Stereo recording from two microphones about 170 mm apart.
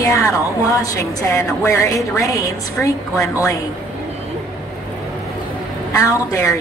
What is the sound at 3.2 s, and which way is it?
Speech, 20° left (ahead or behind).